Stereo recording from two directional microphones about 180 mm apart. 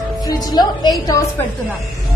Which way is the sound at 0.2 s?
20° left (ahead or behind).